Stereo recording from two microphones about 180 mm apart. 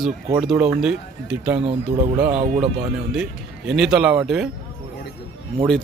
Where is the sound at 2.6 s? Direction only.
5° right (ahead or behind).